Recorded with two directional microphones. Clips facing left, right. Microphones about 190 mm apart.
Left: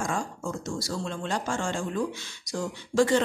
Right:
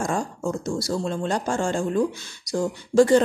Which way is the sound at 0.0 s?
35° right (ahead or behind).